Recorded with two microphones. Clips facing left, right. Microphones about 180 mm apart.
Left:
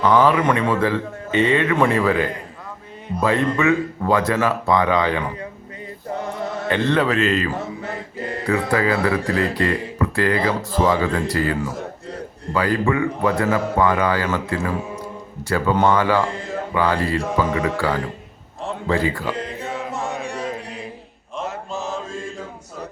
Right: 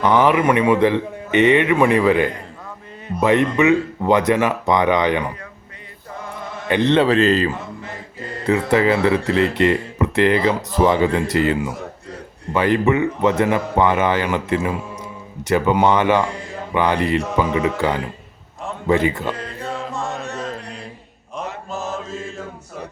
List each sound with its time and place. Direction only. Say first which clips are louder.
0.0 s a man's voice: right 1 dB; 20° right (ahead or behind)
6.7 s speech: right 4 dB; 20° right (ahead or behind); by 7.5 s 35° right (ahead or behind)
8.4 s speech: right 4 dB; 25° right (ahead or behind)
12.5 s speech: right 3 dB; 20° right (ahead or behind)
19.9 s music: even; 15° left (ahead or behind)
20.2 s a sound: left 1 dB; 10° left (ahead or behind)